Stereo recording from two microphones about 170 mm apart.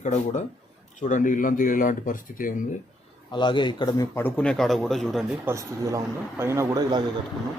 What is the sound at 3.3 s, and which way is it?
Speech, 30° left (ahead or behind).